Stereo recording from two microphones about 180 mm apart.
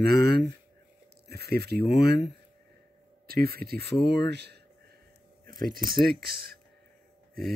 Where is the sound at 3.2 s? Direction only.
55° right (ahead or behind).